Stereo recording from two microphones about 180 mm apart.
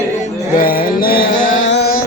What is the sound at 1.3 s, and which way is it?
Music, 90° left.